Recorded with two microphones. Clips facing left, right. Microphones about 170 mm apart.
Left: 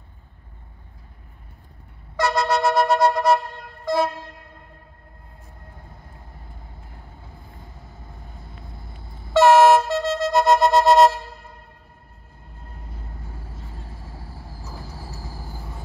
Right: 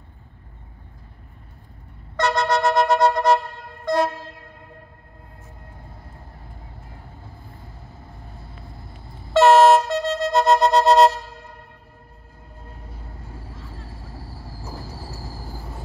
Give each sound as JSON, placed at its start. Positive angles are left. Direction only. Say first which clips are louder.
{"t": 2.1, "sound": "a sound", "louder": "even", "side_deg": 0}
{"t": 2.7, "sound": "music", "louder": "right 1 dB", "side_deg": -20}
{"t": 3.1, "sound": "vehicle", "louder": "even", "side_deg": 0}
{"t": 9.4, "sound": "vehicle", "louder": "even", "side_deg": 0}